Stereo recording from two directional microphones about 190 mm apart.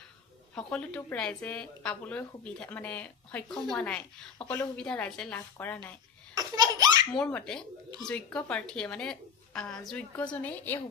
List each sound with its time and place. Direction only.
0.5 s a woman's voice: 5° left (ahead or behind)
6.3 s laughter: 20° right (ahead or behind)
7.1 s a woman's voice: 5° left (ahead or behind)